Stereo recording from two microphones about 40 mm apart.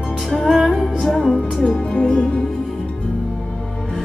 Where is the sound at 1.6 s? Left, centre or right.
Centre.